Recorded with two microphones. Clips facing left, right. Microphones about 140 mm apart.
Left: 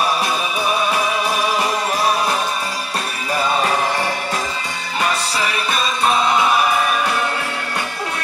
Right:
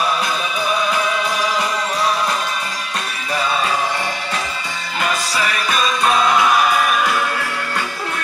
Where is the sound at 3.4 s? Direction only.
45° left (ahead or behind).